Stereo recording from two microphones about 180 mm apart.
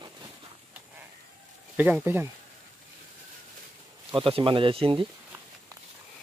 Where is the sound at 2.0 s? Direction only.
15° right (ahead or behind).